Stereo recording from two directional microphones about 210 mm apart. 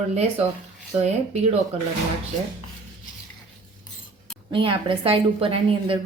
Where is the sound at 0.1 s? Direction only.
30° right (ahead or behind).